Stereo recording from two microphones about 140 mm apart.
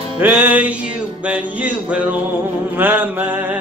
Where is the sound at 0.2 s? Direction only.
15° right (ahead or behind).